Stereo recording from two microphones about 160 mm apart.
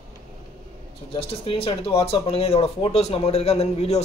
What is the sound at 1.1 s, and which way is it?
Speech, 35° left (ahead or behind).